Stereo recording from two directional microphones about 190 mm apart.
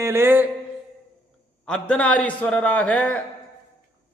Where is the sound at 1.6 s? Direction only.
5° left (ahead or behind).